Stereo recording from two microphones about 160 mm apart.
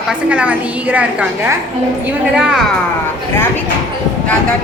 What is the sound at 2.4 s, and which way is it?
Speech, 5° right (ahead or behind).